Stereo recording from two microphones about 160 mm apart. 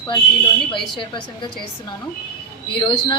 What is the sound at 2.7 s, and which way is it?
Speech, 30° left (ahead or behind).